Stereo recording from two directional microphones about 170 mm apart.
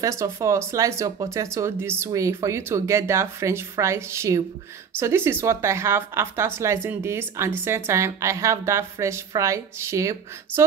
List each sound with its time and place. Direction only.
0.0 s a woman's voice: 20° right (ahead or behind)